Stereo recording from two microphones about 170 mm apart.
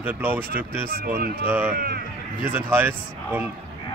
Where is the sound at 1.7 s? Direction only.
65° right (ahead or behind).